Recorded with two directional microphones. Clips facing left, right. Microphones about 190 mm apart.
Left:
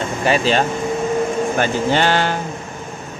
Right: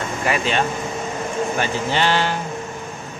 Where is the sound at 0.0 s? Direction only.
30° left (ahead or behind).